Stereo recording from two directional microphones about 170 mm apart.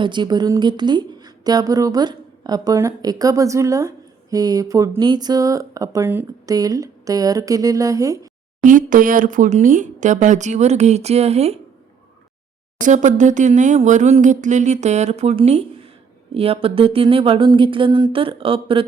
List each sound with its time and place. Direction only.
0.0 s speech: 25° right (ahead or behind)
8.6 s speech: 50° right (ahead or behind)
12.8 s speech: 45° right (ahead or behind)
16.3 s a sound: 35° right (ahead or behind)